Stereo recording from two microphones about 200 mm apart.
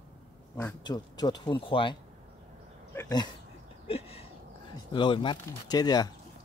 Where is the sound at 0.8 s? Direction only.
20° left (ahead or behind).